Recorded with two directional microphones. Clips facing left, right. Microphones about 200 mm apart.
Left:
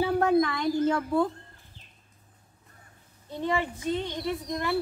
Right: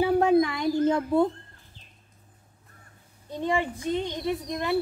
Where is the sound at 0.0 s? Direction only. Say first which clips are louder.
Right 2 dB; 15° right (ahead or behind).